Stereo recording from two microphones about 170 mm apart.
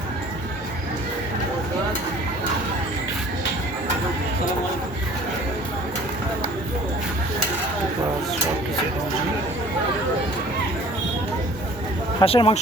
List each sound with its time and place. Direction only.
12.2 s speech: 35° left (ahead or behind)